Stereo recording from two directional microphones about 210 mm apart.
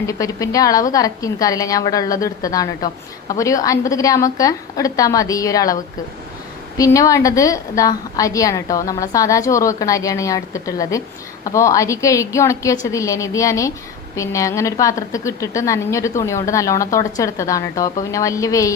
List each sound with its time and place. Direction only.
0.1 s a woman's voice: 15° left (ahead or behind)